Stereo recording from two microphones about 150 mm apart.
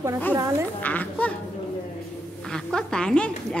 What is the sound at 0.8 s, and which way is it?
Speech, 10° left (ahead or behind).